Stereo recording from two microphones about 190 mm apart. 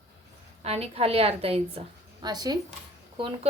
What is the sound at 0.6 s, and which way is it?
A woman's voice, 35° right (ahead or behind).